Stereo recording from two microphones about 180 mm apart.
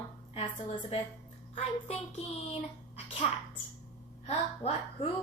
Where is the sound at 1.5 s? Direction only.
35° left (ahead or behind).